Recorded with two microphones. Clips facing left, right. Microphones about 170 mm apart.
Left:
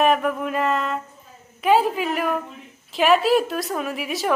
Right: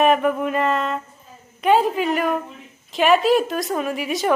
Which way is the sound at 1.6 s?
5° left (ahead or behind).